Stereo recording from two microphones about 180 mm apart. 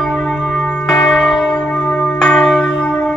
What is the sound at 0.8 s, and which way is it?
Church bell, 5° left (ahead or behind).